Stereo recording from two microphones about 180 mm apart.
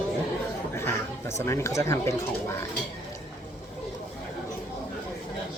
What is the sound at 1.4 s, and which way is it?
Speech, 15° left (ahead or behind).